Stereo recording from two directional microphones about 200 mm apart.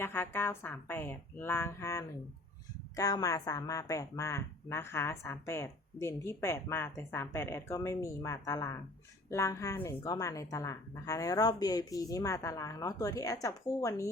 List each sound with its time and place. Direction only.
0.0 s a woman's voice: 10° left (ahead or behind)